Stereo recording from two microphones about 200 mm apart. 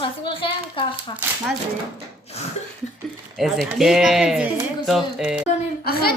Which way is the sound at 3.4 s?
Centre (ahead or behind).